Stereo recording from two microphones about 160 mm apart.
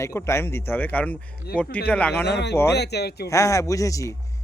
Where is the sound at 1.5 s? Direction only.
80° left.